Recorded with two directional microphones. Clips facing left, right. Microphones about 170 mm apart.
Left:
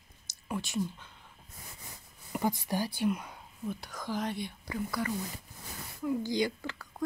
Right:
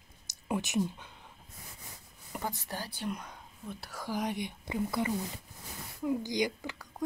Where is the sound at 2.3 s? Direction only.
10° left (ahead or behind).